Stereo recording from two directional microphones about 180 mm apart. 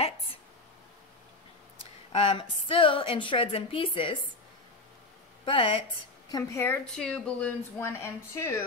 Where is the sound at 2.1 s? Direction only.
30° left (ahead or behind).